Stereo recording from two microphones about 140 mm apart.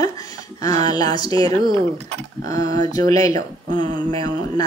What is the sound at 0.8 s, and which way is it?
Speech, 30° left (ahead or behind).